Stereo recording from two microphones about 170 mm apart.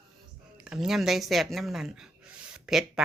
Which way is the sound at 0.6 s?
5° right (ahead or behind).